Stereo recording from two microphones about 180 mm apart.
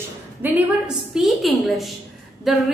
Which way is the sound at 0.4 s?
10° right (ahead or behind).